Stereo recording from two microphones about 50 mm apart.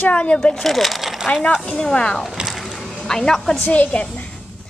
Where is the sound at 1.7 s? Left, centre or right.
Centre.